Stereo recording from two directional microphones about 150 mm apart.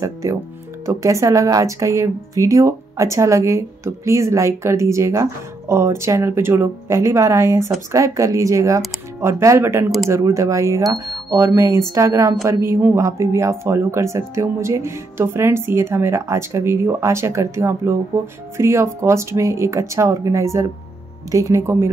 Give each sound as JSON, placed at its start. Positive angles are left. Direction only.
{"t": 0.0, "sound": "speech", "side_deg": -20}